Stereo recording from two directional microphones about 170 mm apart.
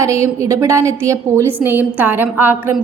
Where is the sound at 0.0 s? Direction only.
15° right (ahead or behind).